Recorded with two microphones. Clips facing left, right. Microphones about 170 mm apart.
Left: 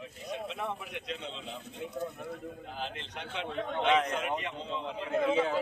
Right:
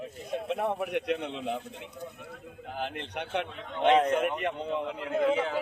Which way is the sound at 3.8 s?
50° right (ahead or behind).